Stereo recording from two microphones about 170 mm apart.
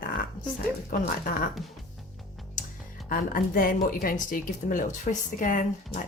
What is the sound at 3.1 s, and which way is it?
A woman's voice, 55° left (ahead or behind).